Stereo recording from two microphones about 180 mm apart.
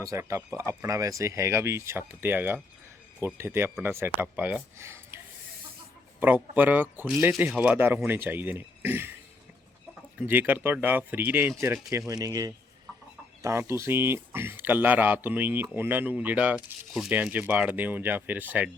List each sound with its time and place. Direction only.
0.0 s speech: 15° right (ahead or behind)
10.2 s speech: 10° right (ahead or behind)